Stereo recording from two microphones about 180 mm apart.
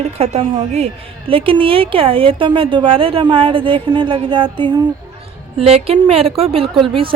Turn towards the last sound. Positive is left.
turn(degrees=-30)  # may be behind; listen again after turning